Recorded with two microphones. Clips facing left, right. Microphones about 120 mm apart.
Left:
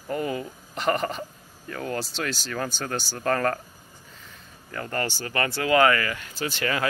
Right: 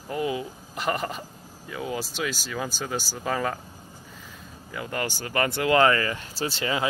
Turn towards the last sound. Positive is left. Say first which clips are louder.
# even
turn(degrees=-25)  # may be behind; listen again after turning